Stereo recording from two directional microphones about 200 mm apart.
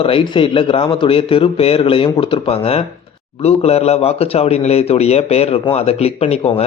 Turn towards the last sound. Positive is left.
turn(degrees=30)  # may be behind; listen again after turning